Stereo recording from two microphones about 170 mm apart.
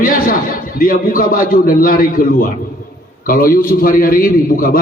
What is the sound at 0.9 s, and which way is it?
A man's voice, 55° left (ahead or behind).